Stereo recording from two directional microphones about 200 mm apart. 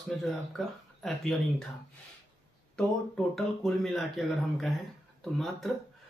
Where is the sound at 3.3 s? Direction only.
Centre (ahead or behind).